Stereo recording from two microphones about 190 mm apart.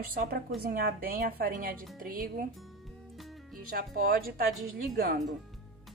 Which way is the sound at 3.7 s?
50° right (ahead or behind).